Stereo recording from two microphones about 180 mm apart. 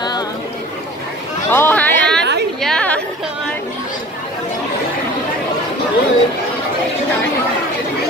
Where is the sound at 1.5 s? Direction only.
10° left (ahead or behind).